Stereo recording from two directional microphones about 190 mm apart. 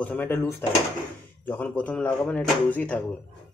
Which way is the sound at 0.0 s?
10° left (ahead or behind).